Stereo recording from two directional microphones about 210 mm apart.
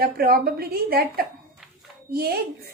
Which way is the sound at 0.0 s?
45° right (ahead or behind).